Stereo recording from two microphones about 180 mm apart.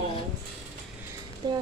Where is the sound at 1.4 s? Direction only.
25° right (ahead or behind).